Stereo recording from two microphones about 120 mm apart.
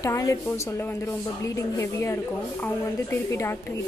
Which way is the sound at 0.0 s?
25° left (ahead or behind).